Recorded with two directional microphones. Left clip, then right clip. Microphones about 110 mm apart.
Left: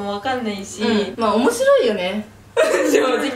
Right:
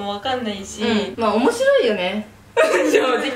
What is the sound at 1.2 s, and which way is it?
A woman's voice, 10° left (ahead or behind).